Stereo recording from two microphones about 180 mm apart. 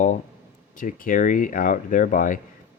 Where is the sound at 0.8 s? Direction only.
50° left (ahead or behind).